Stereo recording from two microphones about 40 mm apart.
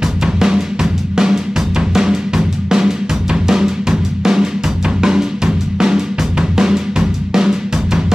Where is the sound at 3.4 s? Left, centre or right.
Centre.